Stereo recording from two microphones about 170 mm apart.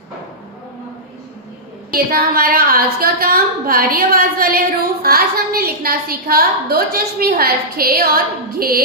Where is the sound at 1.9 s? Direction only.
60° right (ahead or behind).